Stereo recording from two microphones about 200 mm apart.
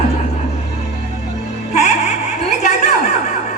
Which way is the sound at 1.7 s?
35° left (ahead or behind).